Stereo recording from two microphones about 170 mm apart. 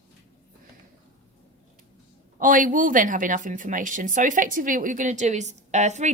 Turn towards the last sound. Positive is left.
turn(degrees=-45)  # may be behind; listen again after turning